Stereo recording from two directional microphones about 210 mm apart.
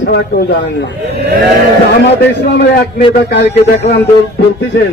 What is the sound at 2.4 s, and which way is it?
Speech, 50° left (ahead or behind).